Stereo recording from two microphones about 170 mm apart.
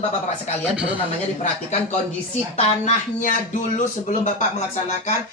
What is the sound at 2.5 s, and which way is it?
Speech, 45° left (ahead or behind).